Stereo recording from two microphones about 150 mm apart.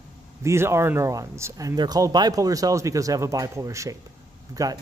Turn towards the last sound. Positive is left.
turn(degrees=-25)  # may be behind; listen again after turning